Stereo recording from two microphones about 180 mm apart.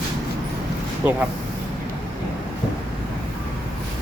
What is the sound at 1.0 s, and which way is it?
Speech, 10° right (ahead or behind).